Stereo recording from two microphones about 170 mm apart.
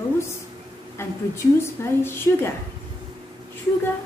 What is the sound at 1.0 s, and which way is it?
A woman's voice, 15° left (ahead or behind).